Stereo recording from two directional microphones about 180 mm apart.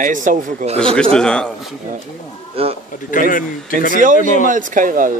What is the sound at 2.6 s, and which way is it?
Speech, 30° right (ahead or behind).